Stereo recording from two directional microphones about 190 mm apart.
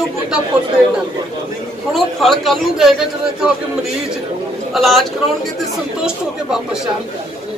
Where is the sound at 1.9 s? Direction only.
Centre (ahead or behind).